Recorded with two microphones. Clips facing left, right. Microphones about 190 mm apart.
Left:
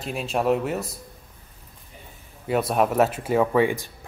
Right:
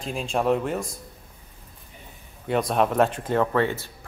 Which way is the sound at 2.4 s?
5° left (ahead or behind).